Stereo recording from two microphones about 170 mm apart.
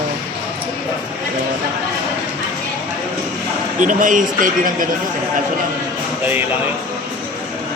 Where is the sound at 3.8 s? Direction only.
50° right (ahead or behind).